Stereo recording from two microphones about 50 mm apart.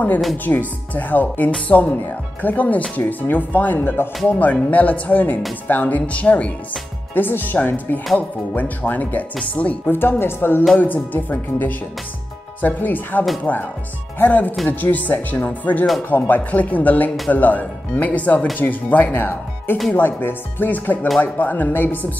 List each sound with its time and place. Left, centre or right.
0.5 s speech: left
4.4 s speech: left
7.2 s speech: left
9.8 s speech: left
10.8 s speech: left